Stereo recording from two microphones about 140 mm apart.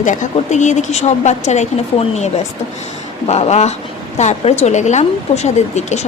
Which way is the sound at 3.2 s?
50° left (ahead or behind).